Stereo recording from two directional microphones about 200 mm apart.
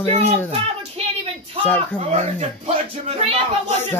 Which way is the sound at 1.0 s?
30° right (ahead or behind).